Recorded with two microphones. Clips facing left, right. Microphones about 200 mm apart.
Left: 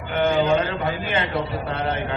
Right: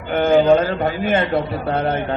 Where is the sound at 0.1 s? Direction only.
45° right (ahead or behind).